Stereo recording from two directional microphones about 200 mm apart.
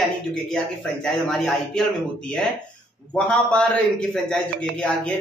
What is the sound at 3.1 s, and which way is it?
Speech, 5° left (ahead or behind).